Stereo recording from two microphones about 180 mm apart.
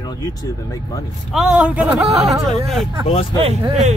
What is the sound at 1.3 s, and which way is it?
Speech, 5° right (ahead or behind).